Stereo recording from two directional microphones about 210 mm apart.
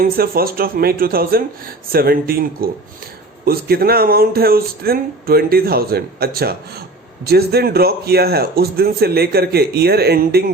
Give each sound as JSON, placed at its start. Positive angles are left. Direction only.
{"t": 0.0, "sound": "speech", "side_deg": -45}